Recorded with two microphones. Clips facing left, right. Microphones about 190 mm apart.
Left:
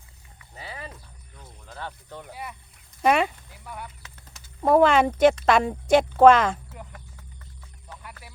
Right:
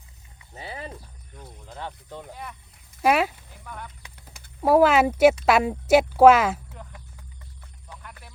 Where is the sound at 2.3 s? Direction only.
10° left (ahead or behind).